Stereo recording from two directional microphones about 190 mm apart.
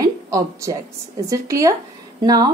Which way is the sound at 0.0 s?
15° right (ahead or behind).